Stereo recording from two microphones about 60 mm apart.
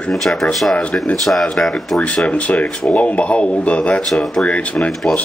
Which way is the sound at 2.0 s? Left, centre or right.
Left.